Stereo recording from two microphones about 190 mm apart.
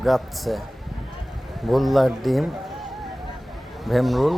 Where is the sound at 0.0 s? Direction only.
Centre (ahead or behind).